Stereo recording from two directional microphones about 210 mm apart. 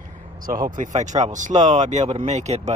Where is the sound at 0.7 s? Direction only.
35° right (ahead or behind).